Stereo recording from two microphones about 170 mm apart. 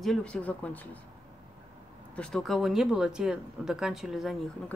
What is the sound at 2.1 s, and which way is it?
Speech, 5° left (ahead or behind).